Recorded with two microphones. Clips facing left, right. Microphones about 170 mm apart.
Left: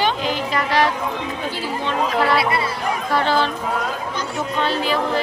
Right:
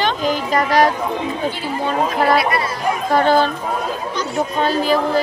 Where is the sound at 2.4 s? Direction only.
25° left (ahead or behind).